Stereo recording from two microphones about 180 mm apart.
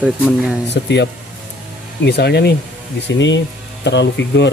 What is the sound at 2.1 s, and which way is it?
Speech, 65° left (ahead or behind).